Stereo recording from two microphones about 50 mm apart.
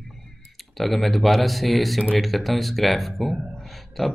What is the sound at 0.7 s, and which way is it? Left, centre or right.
Speech, centre.